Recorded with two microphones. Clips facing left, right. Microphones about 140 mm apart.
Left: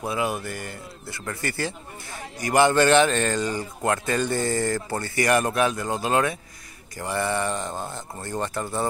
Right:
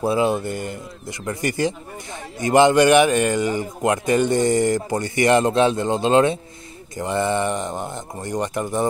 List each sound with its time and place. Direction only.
0.0 s speech: 30° right (ahead or behind)